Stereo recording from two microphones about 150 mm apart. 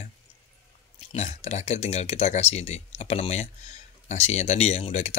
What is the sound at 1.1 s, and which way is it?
Speech, 50° left (ahead or behind).